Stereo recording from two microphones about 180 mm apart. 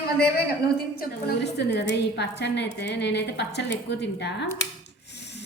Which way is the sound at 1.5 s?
70° left (ahead or behind).